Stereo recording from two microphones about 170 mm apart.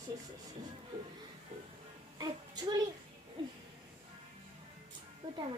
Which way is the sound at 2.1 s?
25° right (ahead or behind).